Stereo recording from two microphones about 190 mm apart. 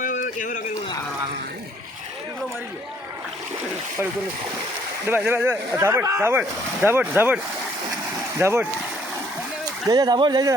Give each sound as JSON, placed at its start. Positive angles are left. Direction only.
{"t": 0.0, "sound": "a sound", "side_deg": 45}
{"t": 5.0, "sound": "speech", "side_deg": -10}
{"t": 8.4, "sound": "speech", "side_deg": -15}
{"t": 9.9, "sound": "speech", "side_deg": -20}